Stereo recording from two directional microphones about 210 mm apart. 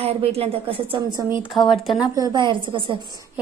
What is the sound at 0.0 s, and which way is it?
A woman's voice, 30° right (ahead or behind).